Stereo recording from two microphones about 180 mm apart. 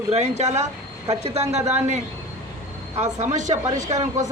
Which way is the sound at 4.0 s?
20° right (ahead or behind).